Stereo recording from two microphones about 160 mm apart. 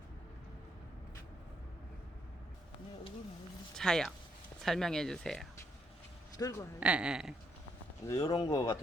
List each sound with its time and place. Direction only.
3.8 s speech: 5° left (ahead or behind)
6.3 s speech: 20° left (ahead or behind)
6.7 s speech: 5° right (ahead or behind)
8.0 s speech: 20° left (ahead or behind)